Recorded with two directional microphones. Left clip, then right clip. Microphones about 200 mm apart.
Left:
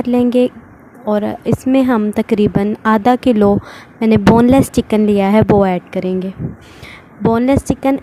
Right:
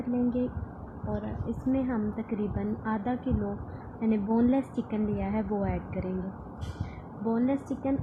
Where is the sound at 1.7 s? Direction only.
60° left (ahead or behind).